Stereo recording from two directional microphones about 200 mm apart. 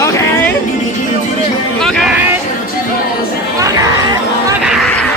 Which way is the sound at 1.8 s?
Centre (ahead or behind).